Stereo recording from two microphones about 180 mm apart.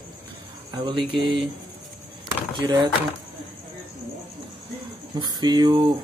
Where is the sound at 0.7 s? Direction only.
25° right (ahead or behind).